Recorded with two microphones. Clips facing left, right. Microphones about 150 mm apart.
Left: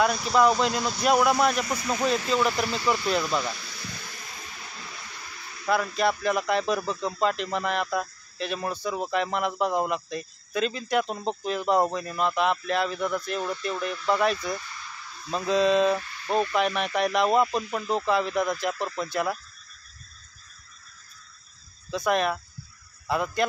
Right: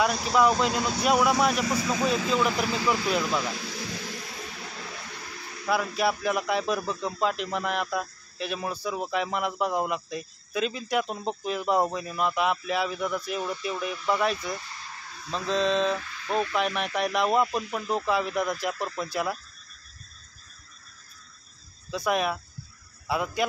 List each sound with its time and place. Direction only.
0.0 s speech: centre (ahead or behind)
3.5 s vehicle: 90° right
4.6 s a sound: 50° right (ahead or behind)
5.7 s speech: 5° right (ahead or behind)
14.6 s a sound: 30° right (ahead or behind)
15.3 s speech: 5° left (ahead or behind)
21.9 s a man's voice: 5° right (ahead or behind)